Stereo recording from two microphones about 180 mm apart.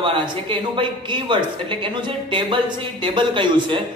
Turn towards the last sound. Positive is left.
turn(degrees=-25)  # may be behind; listen again after turning